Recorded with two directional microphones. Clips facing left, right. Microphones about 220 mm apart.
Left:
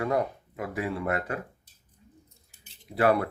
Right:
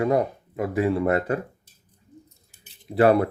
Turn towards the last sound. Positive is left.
turn(degrees=-25)  # may be behind; listen again after turning